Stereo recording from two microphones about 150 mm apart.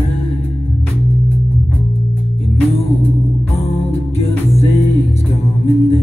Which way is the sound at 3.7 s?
45° left (ahead or behind).